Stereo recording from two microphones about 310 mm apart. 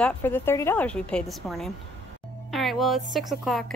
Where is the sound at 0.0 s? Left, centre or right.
Centre.